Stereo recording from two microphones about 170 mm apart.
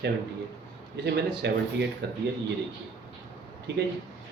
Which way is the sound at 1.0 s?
80° right.